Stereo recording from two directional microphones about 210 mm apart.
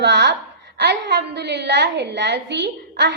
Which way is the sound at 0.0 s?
55° right (ahead or behind).